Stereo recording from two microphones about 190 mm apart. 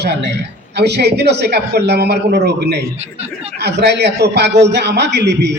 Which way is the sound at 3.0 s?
35° right (ahead or behind).